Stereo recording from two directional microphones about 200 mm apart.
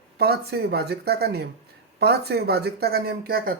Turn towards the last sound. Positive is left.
turn(degrees=-45)  # may be behind; listen again after turning